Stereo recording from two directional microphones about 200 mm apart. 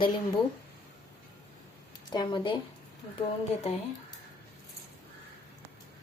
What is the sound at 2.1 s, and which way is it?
Speech, 20° left (ahead or behind).